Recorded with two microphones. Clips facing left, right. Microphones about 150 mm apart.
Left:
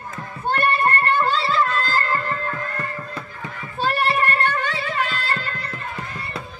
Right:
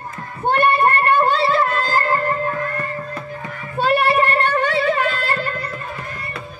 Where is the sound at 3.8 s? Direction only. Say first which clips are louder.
Right 5 dB; 60° right (ahead or behind).